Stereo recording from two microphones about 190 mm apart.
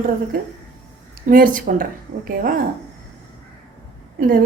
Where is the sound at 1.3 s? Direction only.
45° right (ahead or behind).